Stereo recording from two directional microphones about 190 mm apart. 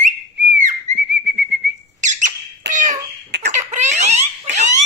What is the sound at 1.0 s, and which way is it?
Whistling, 65° right (ahead or behind).